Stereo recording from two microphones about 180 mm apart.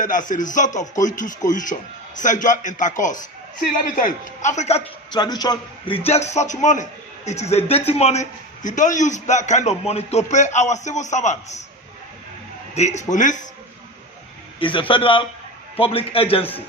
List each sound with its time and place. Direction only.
0.0 s a man's voice: 45° left (ahead or behind)
5.1 s a man's voice: 25° left (ahead or behind); by 11.6 s 40° left (ahead or behind)
12.7 s a man's voice: 40° left (ahead or behind)
14.6 s a man's voice: 30° left (ahead or behind)